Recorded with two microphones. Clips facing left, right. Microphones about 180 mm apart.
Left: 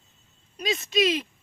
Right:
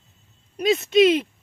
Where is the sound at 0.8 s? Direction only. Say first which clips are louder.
Right 8 dB; 60° right (ahead or behind).